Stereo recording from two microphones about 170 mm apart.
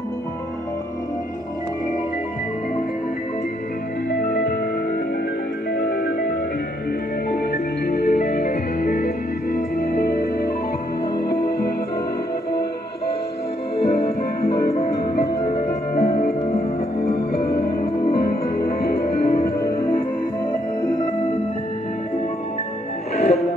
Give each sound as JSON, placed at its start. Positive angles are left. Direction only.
{"t": 4.1, "sound": "music", "side_deg": 70}
{"t": 5.8, "sound": "music", "side_deg": 80}
{"t": 7.8, "sound": "music", "side_deg": 75}
{"t": 13.7, "sound": "music", "side_deg": 65}
{"t": 14.7, "sound": "music", "side_deg": 40}
{"t": 15.4, "sound": "music", "side_deg": 60}
{"t": 23.1, "sound": "music", "side_deg": 40}